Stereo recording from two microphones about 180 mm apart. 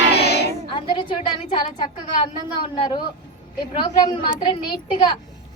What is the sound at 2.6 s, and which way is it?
Speech, 25° left (ahead or behind).